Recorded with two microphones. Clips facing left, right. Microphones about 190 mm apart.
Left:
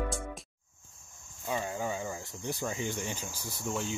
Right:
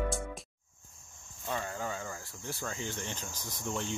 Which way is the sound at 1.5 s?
15° left (ahead or behind).